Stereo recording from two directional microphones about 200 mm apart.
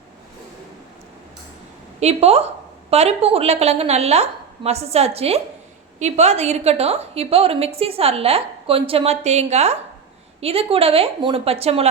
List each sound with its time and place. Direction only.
2.0 s a woman's voice: 30° right (ahead or behind)